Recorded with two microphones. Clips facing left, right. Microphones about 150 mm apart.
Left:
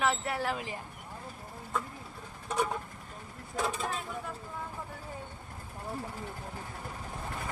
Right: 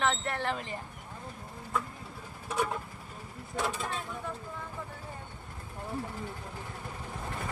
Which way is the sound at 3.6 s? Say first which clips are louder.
Left 1 dB; centre (ahead or behind).